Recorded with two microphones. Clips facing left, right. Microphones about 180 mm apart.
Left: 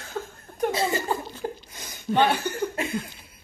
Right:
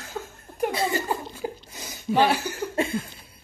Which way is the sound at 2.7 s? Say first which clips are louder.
Right 3 dB; 30° right (ahead or behind).